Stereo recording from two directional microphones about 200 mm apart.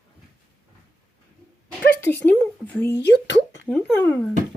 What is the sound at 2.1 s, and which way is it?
Speech, 10° left (ahead or behind).